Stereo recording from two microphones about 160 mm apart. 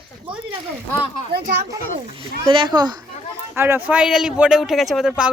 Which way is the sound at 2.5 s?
30° right (ahead or behind).